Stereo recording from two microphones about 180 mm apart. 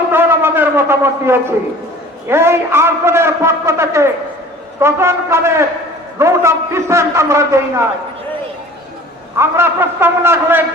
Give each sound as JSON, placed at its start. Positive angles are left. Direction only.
{"t": 0.1, "sound": "a man's voice", "side_deg": -10}
{"t": 9.4, "sound": "a man's voice", "side_deg": -15}